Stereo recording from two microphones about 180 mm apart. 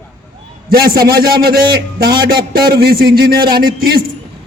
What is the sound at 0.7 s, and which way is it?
A man's voice, 55° right (ahead or behind).